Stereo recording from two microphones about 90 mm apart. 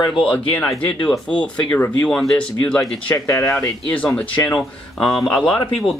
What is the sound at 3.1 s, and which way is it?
Speech, 35° left (ahead or behind).